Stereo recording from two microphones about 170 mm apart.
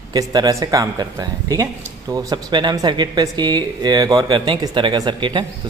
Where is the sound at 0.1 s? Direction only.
25° right (ahead or behind).